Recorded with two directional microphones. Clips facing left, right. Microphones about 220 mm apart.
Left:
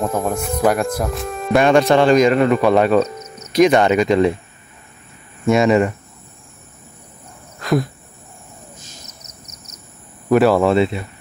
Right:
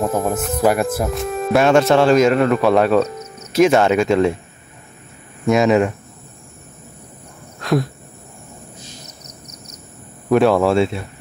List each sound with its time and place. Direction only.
0.0 s speech: centre (ahead or behind)
5.5 s speech: centre (ahead or behind)
7.5 s cricket: centre (ahead or behind)
9.2 s a sound: 20° left (ahead or behind)
10.3 s speech: centre (ahead or behind)